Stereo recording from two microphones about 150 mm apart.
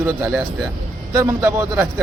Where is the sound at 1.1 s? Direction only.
20° right (ahead or behind).